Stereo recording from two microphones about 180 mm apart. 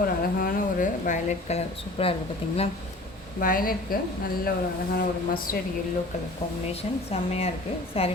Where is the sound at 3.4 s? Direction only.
50° left (ahead or behind).